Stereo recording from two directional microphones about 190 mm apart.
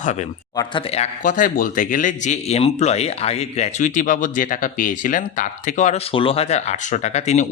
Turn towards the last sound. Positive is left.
turn(degrees=35)  # may be behind; listen again after turning